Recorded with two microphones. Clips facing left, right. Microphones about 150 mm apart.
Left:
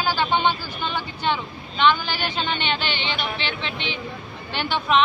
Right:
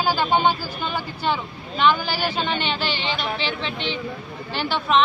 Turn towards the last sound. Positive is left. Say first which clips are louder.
# even
turn(degrees=0)  # may be behind; listen again after turning